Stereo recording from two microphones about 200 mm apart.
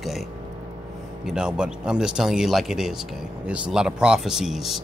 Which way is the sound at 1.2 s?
5° right (ahead or behind).